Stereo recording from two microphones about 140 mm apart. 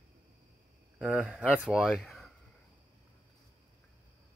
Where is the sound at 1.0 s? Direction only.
5° right (ahead or behind).